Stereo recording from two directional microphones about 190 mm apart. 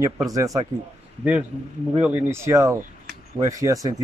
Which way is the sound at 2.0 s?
10° right (ahead or behind).